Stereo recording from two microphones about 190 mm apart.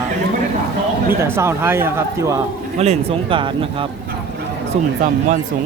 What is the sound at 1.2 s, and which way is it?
Speech, 15° right (ahead or behind).